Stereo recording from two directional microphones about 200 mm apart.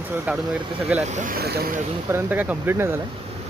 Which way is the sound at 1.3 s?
50° right (ahead or behind).